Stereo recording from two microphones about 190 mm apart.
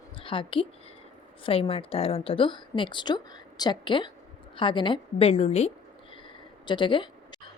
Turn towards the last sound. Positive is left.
turn(degrees=25)  # may be behind; listen again after turning